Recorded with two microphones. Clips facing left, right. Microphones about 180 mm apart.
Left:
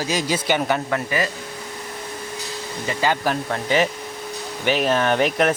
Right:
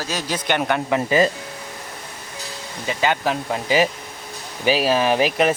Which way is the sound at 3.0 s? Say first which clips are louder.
Right 1 dB; centre (ahead or behind).